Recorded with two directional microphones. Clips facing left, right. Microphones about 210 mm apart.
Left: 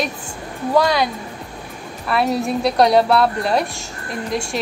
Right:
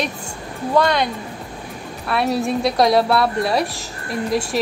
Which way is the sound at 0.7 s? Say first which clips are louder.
Left 1 dB; 5° left (ahead or behind).